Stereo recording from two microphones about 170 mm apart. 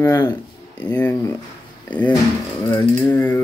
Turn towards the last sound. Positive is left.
turn(degrees=10)  # may be behind; listen again after turning